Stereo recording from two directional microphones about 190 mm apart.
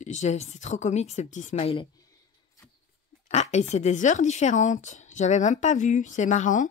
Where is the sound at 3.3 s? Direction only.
35° left (ahead or behind).